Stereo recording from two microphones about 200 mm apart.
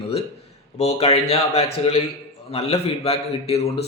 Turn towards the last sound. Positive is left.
turn(degrees=30)  # may be behind; listen again after turning